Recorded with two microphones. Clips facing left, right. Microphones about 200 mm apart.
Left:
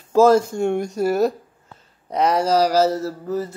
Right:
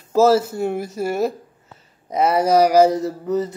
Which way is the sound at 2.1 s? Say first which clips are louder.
Right 2 dB; 5° right (ahead or behind).